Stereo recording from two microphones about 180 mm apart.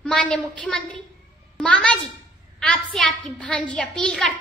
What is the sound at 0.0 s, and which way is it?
A child's voice, 5° left (ahead or behind).